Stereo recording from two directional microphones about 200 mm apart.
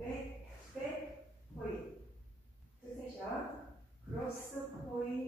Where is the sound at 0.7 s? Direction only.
Centre (ahead or behind).